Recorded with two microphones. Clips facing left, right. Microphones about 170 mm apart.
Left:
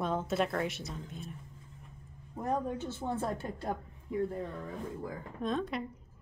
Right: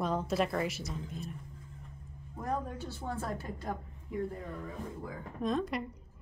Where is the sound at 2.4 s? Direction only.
20° left (ahead or behind).